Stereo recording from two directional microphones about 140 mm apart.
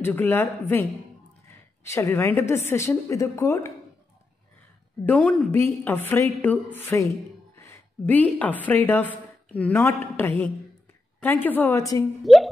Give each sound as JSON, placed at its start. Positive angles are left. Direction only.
{"t": 0.0, "sound": "a woman's voice", "side_deg": 15}
{"t": 1.9, "sound": "a woman's voice", "side_deg": 20}
{"t": 5.0, "sound": "a woman's voice", "side_deg": 10}
{"t": 11.4, "sound": "a woman's voice", "side_deg": 15}
{"t": 11.8, "sound": "a woman's voice", "side_deg": 25}